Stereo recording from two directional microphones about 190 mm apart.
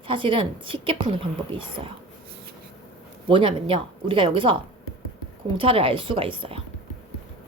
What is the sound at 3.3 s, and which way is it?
Speech, 25° right (ahead or behind).